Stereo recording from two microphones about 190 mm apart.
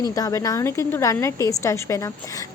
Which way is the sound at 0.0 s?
20° left (ahead or behind).